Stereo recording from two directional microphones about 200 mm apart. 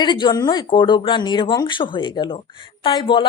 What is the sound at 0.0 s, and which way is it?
Speech, 20° left (ahead or behind).